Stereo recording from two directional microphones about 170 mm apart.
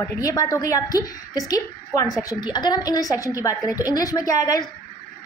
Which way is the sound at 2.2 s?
25° left (ahead or behind).